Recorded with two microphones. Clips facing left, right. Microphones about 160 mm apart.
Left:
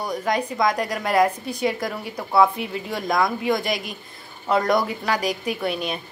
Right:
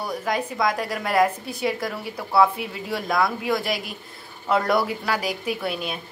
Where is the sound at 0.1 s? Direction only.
5° right (ahead or behind).